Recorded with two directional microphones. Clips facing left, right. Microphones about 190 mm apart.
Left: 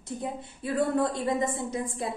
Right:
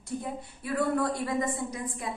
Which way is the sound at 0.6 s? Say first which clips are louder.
Left 2 dB; 25° left (ahead or behind).